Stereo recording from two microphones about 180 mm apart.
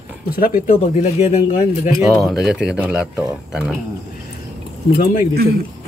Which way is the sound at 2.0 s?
Centre (ahead or behind).